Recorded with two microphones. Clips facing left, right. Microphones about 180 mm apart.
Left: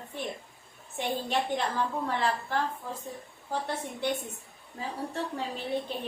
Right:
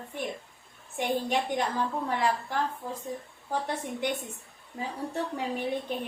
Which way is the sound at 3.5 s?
15° right (ahead or behind).